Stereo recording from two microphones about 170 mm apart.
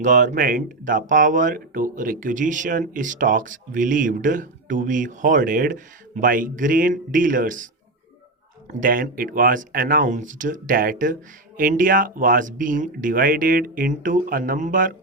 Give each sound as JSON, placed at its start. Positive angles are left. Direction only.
{"t": 0.0, "sound": "speech", "side_deg": -45}
{"t": 8.8, "sound": "speech", "side_deg": -55}